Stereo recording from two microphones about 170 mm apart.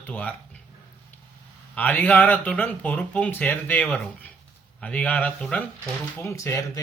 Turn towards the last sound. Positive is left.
turn(degrees=20)  # may be behind; listen again after turning